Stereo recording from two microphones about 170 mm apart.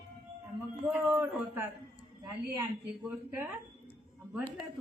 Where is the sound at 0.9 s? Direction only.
15° right (ahead or behind).